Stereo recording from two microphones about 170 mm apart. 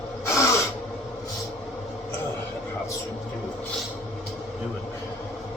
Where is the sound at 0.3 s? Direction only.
15° left (ahead or behind).